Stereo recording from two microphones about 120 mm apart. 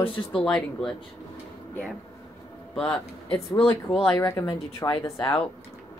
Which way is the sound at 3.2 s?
55° left (ahead or behind).